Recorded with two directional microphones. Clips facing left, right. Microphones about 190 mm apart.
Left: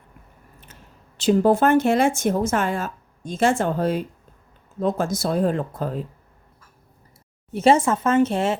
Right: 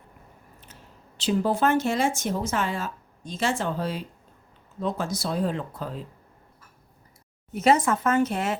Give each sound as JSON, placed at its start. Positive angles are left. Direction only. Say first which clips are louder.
{"t": 0.7, "sound": "speech", "louder": "left 1 dB", "side_deg": 50}
{"t": 7.5, "sound": "speech", "louder": "left 4 dB", "side_deg": 30}